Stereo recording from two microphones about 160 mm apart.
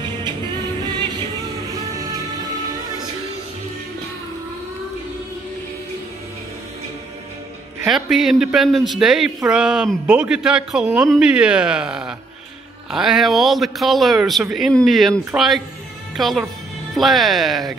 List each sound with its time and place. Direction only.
0.8 s music: 30° right (ahead or behind)
7.8 s speech: centre (ahead or behind)